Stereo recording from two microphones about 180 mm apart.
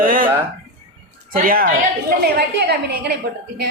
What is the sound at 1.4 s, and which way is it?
Speech, 50° right (ahead or behind).